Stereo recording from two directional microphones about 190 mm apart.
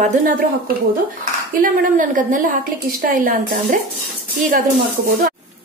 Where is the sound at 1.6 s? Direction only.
45° right (ahead or behind).